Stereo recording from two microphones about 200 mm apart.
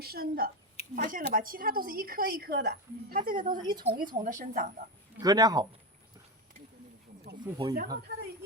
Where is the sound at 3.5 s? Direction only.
20° right (ahead or behind).